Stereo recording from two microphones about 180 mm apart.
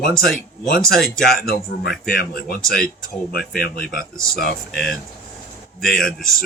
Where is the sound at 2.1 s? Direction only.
55° left (ahead or behind).